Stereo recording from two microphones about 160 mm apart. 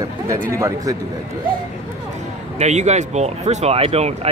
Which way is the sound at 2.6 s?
45° right (ahead or behind).